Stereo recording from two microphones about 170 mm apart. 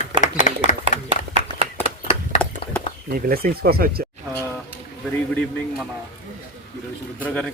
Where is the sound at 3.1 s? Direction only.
60° right (ahead or behind).